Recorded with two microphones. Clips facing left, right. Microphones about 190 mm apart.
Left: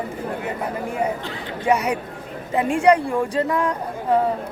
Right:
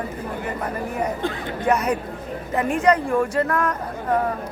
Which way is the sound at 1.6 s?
10° left (ahead or behind).